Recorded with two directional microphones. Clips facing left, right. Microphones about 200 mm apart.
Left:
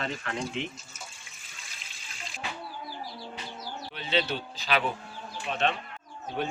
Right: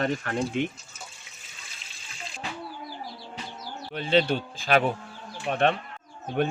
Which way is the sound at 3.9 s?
50° right (ahead or behind).